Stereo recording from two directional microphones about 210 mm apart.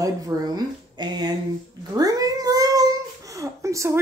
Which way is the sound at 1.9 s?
15° right (ahead or behind).